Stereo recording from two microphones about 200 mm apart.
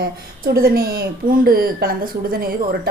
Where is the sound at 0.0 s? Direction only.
50° right (ahead or behind).